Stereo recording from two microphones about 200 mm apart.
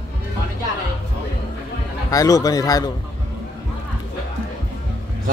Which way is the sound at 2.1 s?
15° left (ahead or behind).